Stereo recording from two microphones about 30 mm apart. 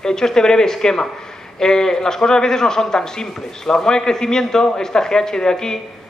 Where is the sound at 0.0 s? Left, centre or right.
Centre.